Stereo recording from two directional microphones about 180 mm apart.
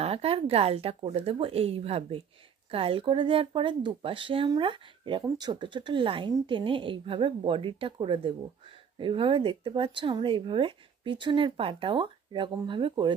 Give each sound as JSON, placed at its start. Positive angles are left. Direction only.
{"t": 0.0, "sound": "speech", "side_deg": -35}